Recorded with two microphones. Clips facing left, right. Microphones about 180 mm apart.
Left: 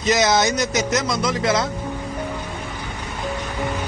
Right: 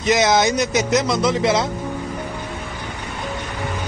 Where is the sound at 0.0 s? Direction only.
20° right (ahead or behind).